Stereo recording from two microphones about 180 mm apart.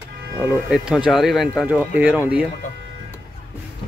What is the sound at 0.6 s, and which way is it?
Speech, 5° right (ahead or behind).